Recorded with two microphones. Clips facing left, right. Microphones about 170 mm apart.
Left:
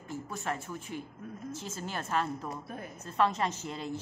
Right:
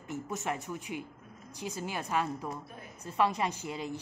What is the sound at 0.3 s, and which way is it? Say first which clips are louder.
A woman's voice: right 1 dB; 20° right (ahead or behind).